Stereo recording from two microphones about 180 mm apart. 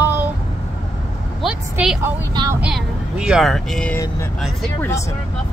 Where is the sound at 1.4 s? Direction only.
5° right (ahead or behind).